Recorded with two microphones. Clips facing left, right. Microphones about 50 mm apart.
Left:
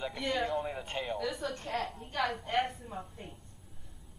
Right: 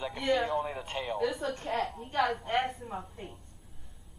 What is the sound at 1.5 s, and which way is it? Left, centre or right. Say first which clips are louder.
A woman's voice: right 4 dB; right.